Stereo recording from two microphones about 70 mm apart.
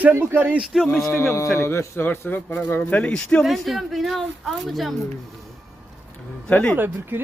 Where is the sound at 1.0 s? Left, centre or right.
Left.